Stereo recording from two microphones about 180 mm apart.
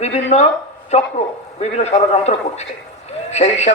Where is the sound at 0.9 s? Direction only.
35° left (ahead or behind).